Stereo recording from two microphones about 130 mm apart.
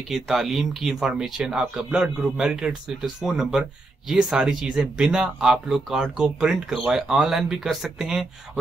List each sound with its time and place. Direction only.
0.1 s speech: centre (ahead or behind)